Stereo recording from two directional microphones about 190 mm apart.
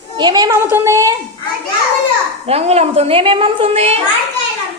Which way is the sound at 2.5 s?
35° right (ahead or behind).